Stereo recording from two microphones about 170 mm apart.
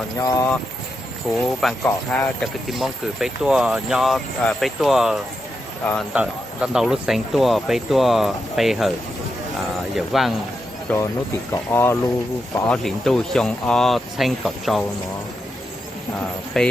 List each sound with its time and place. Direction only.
0.2 s speech: 20° left (ahead or behind)
1.3 s speech: centre (ahead or behind)
1.8 s speech: 10° left (ahead or behind)
2.6 s speech: centre (ahead or behind)
5.8 s speech: 10° left (ahead or behind)
6.1 s speech: 5° right (ahead or behind)
10.8 s speech: 15° left (ahead or behind); by 14.8 s centre (ahead or behind)
16.6 s speech: 5° left (ahead or behind)